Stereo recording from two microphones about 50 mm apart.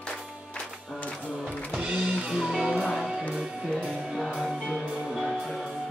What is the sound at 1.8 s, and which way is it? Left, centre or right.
Music, centre.